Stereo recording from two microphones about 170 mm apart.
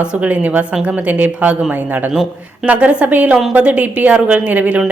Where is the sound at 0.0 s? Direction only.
10° right (ahead or behind).